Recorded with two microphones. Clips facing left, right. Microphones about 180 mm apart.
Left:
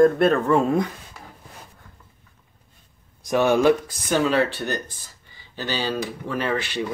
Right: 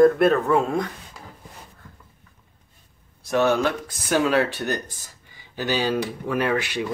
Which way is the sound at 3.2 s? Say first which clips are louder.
Left 2 dB; 15° left (ahead or behind).